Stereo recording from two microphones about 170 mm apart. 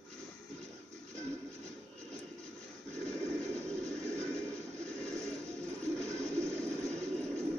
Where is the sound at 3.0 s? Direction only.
5° left (ahead or behind).